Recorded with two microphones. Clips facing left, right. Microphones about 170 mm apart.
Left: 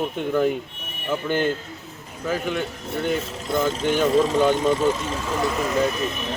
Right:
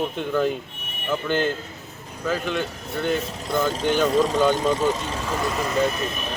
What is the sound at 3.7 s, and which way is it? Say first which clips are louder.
Speech: left 1 dB; 40° right (ahead or behind).